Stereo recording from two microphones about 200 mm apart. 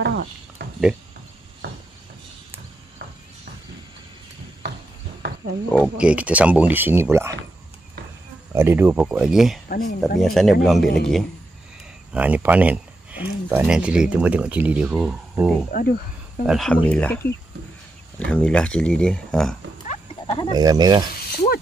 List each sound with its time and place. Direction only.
0.0 s a sound: 55° right (ahead or behind)
4.6 s horse: 55° right (ahead or behind)
5.7 s speech: 5° right (ahead or behind)
8.5 s speech: 10° right (ahead or behind)
9.7 s speech: 45° left (ahead or behind)
10.2 s speech: centre (ahead or behind)
15.7 s speech: 45° left (ahead or behind)
16.4 s speech: centre (ahead or behind)
19.9 s livestock: 25° left (ahead or behind)
20.5 s speech: 20° right (ahead or behind)